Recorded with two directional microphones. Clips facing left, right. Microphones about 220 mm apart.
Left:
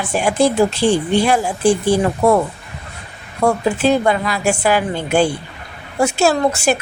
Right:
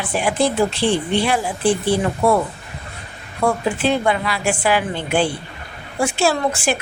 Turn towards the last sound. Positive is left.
turn(degrees=40)  # may be behind; listen again after turning